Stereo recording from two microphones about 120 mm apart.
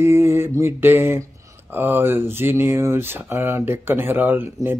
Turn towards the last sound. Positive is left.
turn(degrees=-20)  # may be behind; listen again after turning